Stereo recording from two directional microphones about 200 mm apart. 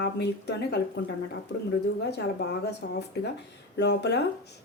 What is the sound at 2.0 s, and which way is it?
A woman's voice, 55° left (ahead or behind).